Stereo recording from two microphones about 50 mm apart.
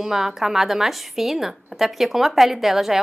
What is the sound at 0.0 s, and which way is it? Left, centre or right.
A woman's voice, centre.